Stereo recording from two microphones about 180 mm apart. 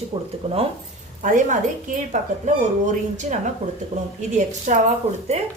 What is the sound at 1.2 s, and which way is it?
A woman's voice, 45° right (ahead or behind).